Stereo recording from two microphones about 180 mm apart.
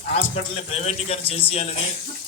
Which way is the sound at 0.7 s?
35° left (ahead or behind).